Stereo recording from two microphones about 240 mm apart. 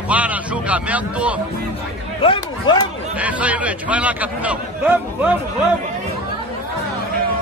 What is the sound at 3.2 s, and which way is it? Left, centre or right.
A man's voice, centre.